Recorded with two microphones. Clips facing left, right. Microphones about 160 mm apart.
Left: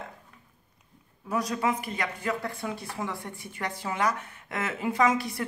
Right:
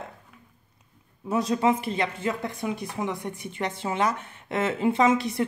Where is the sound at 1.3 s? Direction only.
25° right (ahead or behind).